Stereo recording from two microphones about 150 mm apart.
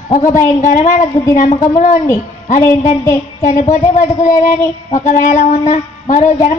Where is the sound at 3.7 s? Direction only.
60° left (ahead or behind).